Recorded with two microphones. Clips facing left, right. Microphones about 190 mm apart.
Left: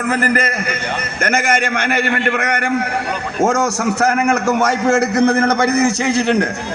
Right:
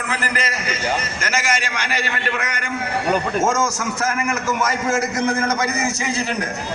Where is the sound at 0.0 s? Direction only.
50° left (ahead or behind); by 6.5 s 65° left (ahead or behind).